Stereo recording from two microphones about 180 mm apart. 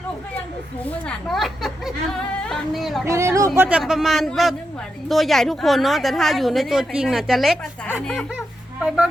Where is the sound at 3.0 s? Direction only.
15° right (ahead or behind).